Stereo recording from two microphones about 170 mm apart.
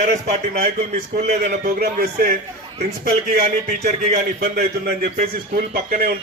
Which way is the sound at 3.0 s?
45° right (ahead or behind).